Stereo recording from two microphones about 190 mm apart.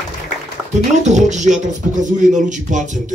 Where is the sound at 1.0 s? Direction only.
40° right (ahead or behind).